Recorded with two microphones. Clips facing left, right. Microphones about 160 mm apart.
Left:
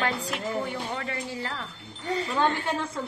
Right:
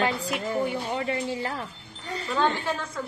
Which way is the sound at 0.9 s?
20° right (ahead or behind).